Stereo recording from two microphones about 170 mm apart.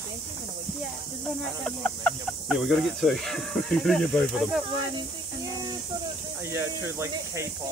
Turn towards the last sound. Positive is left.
turn(degrees=-15)  # may be behind; listen again after turning